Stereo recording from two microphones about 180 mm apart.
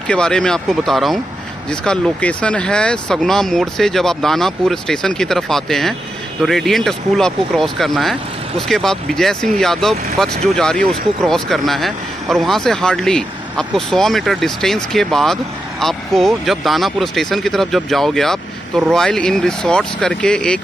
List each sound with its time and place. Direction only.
0.1 s speech: 5° left (ahead or behind)